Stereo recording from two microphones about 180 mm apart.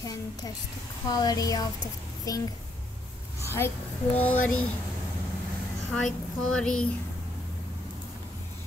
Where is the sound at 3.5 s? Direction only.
10° left (ahead or behind).